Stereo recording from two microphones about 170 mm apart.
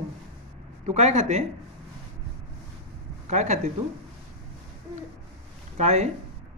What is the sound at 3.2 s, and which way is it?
Speech, 45° right (ahead or behind).